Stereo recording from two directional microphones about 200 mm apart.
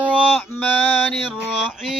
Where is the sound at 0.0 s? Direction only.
5° right (ahead or behind).